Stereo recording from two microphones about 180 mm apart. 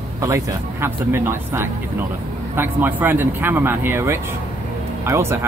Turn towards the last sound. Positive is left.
turn(degrees=-15)  # may be behind; listen again after turning